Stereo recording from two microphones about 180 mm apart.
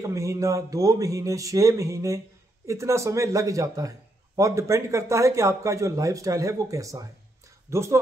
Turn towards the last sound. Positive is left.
turn(degrees=-15)  # may be behind; listen again after turning